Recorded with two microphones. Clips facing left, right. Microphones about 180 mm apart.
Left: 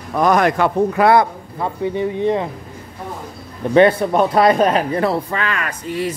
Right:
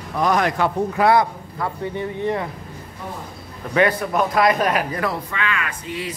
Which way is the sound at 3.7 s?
30° left (ahead or behind).